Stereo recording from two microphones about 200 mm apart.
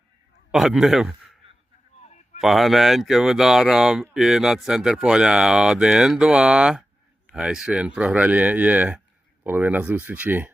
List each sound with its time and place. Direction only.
0.5 s speech: centre (ahead or behind)
2.0 s a sound: 35° left (ahead or behind)
2.4 s speech: centre (ahead or behind)